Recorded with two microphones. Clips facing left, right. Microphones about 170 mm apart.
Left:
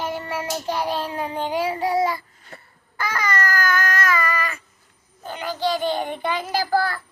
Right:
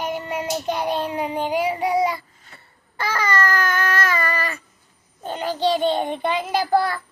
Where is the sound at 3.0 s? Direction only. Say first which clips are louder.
Right 2 dB; 30° right (ahead or behind).